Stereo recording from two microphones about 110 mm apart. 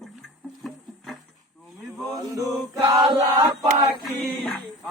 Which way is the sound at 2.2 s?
35° right (ahead or behind).